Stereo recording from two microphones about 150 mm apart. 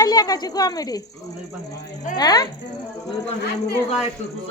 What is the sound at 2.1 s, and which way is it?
Speech, 25° left (ahead or behind).